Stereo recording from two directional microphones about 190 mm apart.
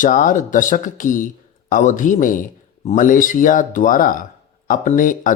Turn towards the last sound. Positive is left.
turn(degrees=45)  # may be behind; listen again after turning